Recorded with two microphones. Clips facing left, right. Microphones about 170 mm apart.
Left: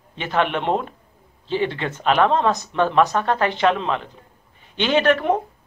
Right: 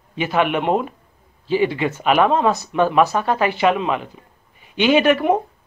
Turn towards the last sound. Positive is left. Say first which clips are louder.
# right 3 dB
turn(degrees=-10)  # may be behind; listen again after turning